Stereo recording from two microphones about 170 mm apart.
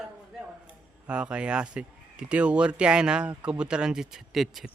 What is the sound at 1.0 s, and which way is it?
Speech, 5° right (ahead or behind).